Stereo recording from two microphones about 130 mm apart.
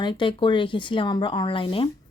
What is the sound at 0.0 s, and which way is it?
Speech, 40° left (ahead or behind).